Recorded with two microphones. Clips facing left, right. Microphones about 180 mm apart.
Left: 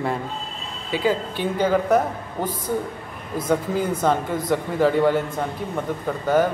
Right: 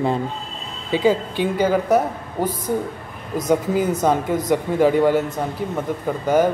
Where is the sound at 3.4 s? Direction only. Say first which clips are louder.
Right 3 dB; 10° right (ahead or behind).